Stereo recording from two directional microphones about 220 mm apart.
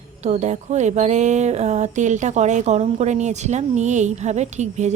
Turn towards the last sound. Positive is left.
turn(degrees=-30)  # may be behind; listen again after turning